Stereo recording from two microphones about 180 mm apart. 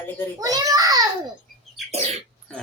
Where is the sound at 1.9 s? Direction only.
35° right (ahead or behind).